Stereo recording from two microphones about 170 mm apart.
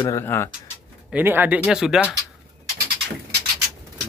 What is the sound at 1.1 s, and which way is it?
Speech, 10° right (ahead or behind).